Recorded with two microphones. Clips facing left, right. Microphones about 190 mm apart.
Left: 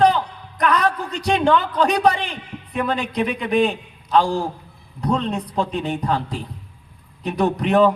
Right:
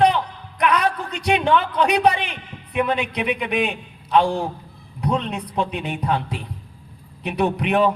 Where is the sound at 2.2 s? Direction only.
35° left (ahead or behind).